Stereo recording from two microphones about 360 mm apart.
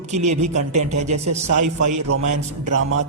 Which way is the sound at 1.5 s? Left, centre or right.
Right.